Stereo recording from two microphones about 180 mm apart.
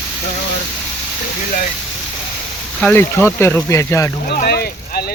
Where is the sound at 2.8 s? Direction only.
5° left (ahead or behind).